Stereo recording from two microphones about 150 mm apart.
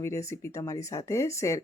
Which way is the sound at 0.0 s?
20° left (ahead or behind).